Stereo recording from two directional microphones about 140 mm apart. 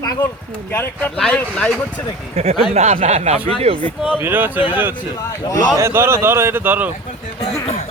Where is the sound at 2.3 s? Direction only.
50° right (ahead or behind).